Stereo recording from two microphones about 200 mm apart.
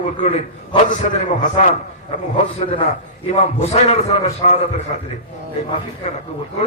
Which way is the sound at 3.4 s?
30° left (ahead or behind).